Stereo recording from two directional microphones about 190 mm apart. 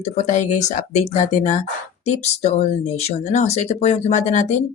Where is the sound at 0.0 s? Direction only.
40° left (ahead or behind).